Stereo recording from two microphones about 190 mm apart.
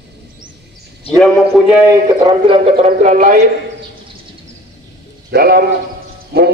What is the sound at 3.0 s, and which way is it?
Speech, 40° right (ahead or behind).